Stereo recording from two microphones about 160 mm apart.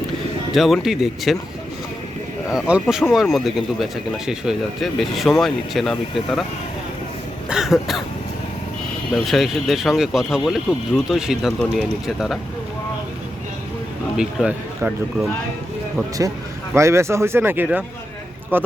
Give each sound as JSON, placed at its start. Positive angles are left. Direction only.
{"t": 0.5, "sound": "speech", "side_deg": 0}
{"t": 2.5, "sound": "speech", "side_deg": -5}
{"t": 7.5, "sound": "speech", "side_deg": 0}
{"t": 9.1, "sound": "speech", "side_deg": 0}
{"t": 14.2, "sound": "speech", "side_deg": -5}
{"t": 16.7, "sound": "speech", "side_deg": -15}